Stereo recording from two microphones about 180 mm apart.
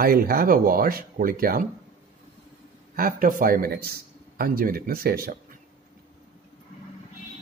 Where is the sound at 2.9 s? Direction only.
55° right (ahead or behind).